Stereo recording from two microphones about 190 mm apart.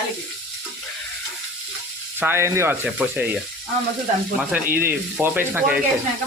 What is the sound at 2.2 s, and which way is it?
Speech, 15° right (ahead or behind).